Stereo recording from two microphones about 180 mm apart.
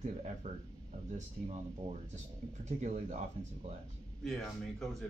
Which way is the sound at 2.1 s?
40° right (ahead or behind).